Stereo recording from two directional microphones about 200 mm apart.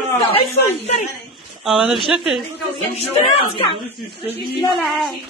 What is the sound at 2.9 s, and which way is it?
Speech, 30° left (ahead or behind).